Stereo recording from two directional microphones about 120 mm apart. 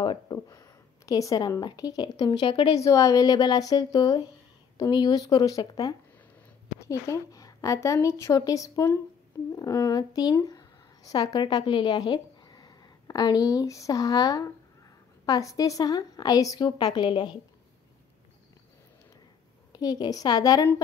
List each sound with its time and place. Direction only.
0.0 s speech: 40° left (ahead or behind)
0.5 s a woman's voice: 30° left (ahead or behind); by 2.8 s 45° left (ahead or behind)
2.8 s a woman's voice: 30° left (ahead or behind)
19.7 s a woman's voice: 35° left (ahead or behind)